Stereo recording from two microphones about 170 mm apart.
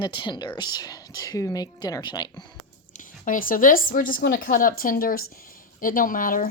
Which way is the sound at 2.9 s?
50° left (ahead or behind).